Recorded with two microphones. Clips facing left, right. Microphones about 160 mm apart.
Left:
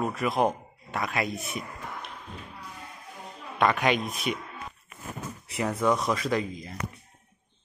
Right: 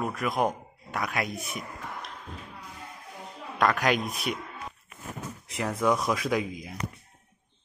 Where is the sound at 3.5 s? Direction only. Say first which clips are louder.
Left 1 dB; centre (ahead or behind).